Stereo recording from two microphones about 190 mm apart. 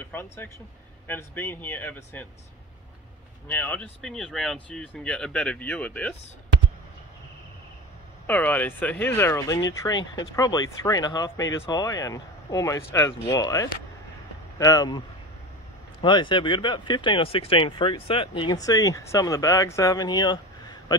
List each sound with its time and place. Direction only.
0.0 s speech: 10° left (ahead or behind)
3.4 s speech: 10° left (ahead or behind)
8.3 s speech: 10° left (ahead or behind)